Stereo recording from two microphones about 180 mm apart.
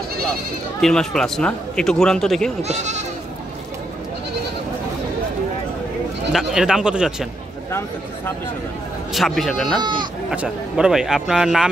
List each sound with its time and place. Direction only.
0.7 s a man's voice: 5° left (ahead or behind)
2.6 s speech: 40° right (ahead or behind)
6.3 s a man's voice: 5° right (ahead or behind)
9.1 s a man's voice: centre (ahead or behind)
9.8 s speech: 25° right (ahead or behind)
10.3 s a man's voice: 5° right (ahead or behind)